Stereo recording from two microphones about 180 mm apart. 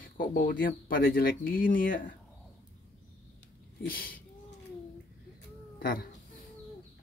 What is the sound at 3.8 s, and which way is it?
Speech, 55° left (ahead or behind).